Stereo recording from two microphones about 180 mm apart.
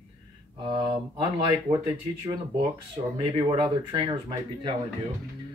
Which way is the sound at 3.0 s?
40° right (ahead or behind).